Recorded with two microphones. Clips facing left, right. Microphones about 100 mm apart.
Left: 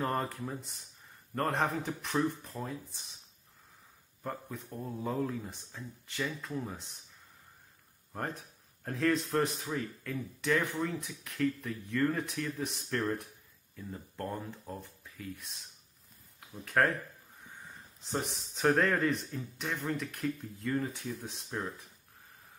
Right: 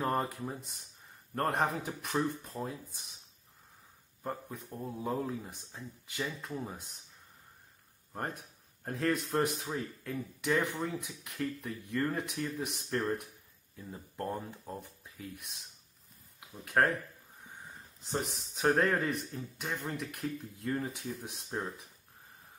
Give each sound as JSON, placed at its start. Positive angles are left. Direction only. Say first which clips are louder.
{"t": 0.0, "sound": "speech", "louder": "right 1 dB", "side_deg": -10}
{"t": 4.2, "sound": "speech", "louder": "even", "side_deg": -10}
{"t": 8.8, "sound": "speech", "louder": "left 2 dB", "side_deg": -5}
{"t": 18.0, "sound": "speech", "louder": "even", "side_deg": -5}